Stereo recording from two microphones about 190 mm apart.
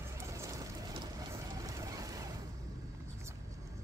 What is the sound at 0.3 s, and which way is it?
Vehicle, 15° right (ahead or behind).